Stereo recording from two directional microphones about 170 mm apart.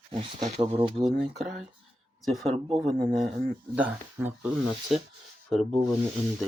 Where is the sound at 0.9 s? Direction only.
Centre (ahead or behind).